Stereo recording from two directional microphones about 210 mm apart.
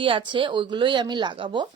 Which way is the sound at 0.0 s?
25° right (ahead or behind).